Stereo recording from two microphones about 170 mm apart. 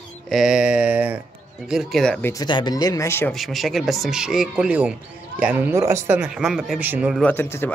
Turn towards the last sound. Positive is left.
turn(degrees=15)  # may be behind; listen again after turning